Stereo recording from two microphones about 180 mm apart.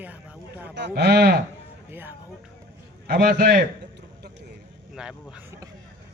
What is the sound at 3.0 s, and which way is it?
Speech, 55° right (ahead or behind).